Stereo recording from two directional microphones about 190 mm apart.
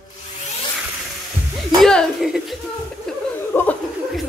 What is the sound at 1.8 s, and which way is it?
Speech, centre (ahead or behind).